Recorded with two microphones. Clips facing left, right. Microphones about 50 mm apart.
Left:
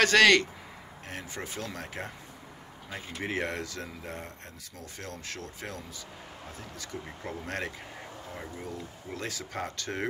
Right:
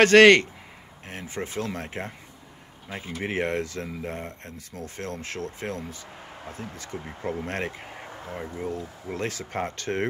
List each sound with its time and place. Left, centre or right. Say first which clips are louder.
0.0 s speech: right 7 dB; right